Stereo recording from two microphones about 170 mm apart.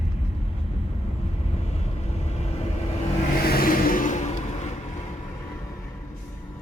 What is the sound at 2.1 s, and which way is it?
Vehicle, 40° left (ahead or behind).